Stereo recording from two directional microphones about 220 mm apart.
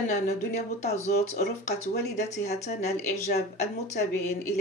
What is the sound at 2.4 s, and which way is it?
Speech, 30° left (ahead or behind).